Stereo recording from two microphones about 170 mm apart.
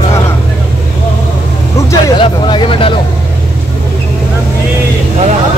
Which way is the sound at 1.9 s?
30° left (ahead or behind).